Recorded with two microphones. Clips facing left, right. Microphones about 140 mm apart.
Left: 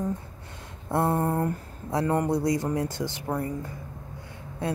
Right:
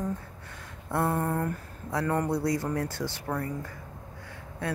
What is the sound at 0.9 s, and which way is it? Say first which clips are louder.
Speech: left 3 dB; 25° left (ahead or behind).